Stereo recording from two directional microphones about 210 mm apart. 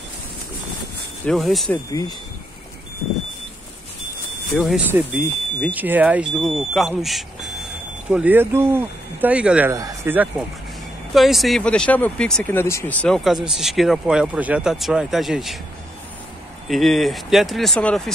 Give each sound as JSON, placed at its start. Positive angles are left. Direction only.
{"t": 1.2, "sound": "speech", "side_deg": 0}
{"t": 1.9, "sound": "speech", "side_deg": 20}
{"t": 4.6, "sound": "speech", "side_deg": 0}
{"t": 16.6, "sound": "speech", "side_deg": 0}